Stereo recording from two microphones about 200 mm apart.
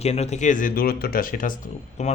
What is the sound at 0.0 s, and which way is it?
Speech, 30° left (ahead or behind).